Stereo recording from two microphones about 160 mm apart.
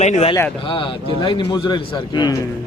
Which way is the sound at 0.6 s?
30° left (ahead or behind).